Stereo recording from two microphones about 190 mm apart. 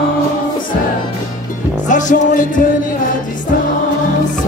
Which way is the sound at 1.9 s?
40° left (ahead or behind).